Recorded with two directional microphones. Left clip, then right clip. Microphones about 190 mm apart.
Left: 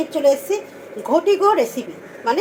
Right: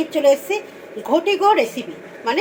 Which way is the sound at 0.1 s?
10° right (ahead or behind).